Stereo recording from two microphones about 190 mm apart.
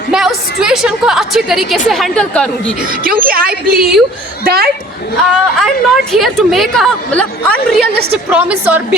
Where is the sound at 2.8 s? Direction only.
50° right (ahead or behind).